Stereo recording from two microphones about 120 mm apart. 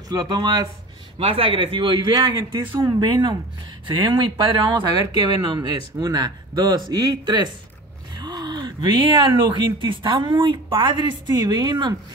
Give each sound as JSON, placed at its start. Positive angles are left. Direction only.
{"t": 0.1, "sound": "a woman's voice", "side_deg": -35}
{"t": 1.2, "sound": "a man's voice", "side_deg": -50}
{"t": 8.2, "sound": "a sound", "side_deg": -35}
{"t": 9.8, "sound": "a woman's voice", "side_deg": -40}